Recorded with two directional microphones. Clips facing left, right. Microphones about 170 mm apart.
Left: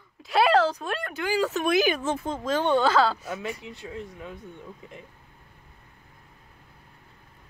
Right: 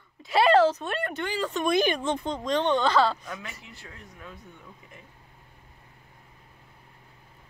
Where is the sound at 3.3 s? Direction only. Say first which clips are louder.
Left 7 dB; 20° left (ahead or behind).